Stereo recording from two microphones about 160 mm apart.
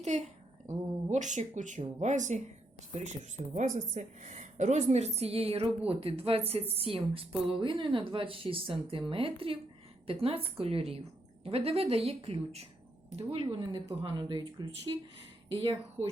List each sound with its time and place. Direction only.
0.0 s a woman's voice: 45° right (ahead or behind)